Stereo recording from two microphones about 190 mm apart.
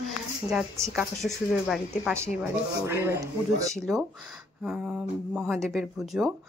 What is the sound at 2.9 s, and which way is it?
Speech, 15° right (ahead or behind).